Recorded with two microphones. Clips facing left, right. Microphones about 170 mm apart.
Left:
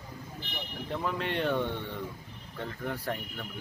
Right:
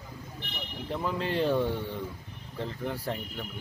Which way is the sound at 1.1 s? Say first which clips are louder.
Right 4 dB; 30° right (ahead or behind).